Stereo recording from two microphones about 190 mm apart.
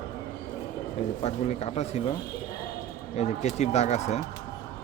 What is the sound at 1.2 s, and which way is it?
Speech, 35° left (ahead or behind).